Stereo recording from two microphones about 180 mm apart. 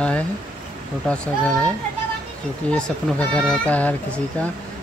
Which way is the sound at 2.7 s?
5° left (ahead or behind).